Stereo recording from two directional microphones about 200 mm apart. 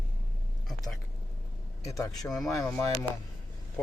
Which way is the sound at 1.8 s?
15° left (ahead or behind).